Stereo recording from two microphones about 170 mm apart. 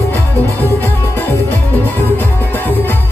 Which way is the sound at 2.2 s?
10° left (ahead or behind).